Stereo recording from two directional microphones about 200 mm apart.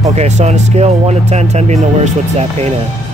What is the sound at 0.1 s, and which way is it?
Speech, 35° right (ahead or behind).